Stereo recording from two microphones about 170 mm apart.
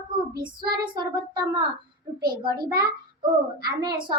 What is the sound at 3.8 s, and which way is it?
Speech, 25° right (ahead or behind).